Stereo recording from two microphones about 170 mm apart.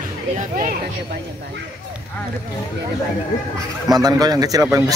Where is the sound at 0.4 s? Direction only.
50° right (ahead or behind).